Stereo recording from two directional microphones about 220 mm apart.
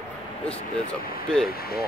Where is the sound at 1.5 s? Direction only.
45° left (ahead or behind).